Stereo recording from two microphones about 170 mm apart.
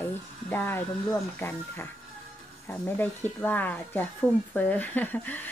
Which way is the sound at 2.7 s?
10° left (ahead or behind).